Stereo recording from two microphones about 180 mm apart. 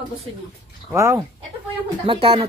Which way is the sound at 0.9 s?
15° right (ahead or behind).